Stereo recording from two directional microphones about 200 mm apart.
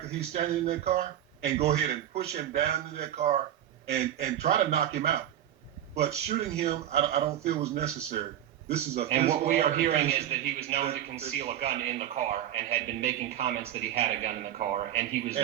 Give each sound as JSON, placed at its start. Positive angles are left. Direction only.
{"t": 0.3, "sound": "a man's voice", "side_deg": -30}